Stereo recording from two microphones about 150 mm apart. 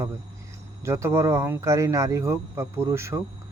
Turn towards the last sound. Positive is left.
turn(degrees=-20)  # may be behind; listen again after turning